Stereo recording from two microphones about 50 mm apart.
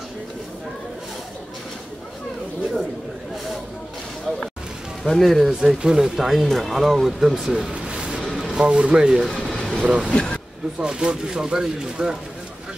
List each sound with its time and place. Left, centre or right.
5.0 s speech: centre
5.5 s speech: centre
7.7 s a sound: centre
8.2 s a sound: centre
8.5 s speech: centre
9.4 s vehicle: centre
9.8 s speech: right
10.1 s speech: left
10.8 s speech: centre